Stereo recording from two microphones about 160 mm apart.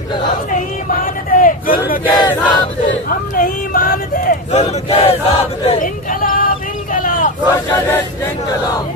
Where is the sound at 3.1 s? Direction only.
60° left (ahead or behind).